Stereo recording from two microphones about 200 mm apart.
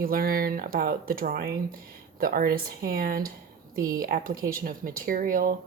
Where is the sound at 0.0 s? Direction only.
45° right (ahead or behind).